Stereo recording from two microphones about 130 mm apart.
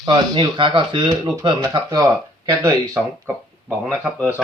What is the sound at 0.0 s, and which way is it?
Speech, 35° right (ahead or behind).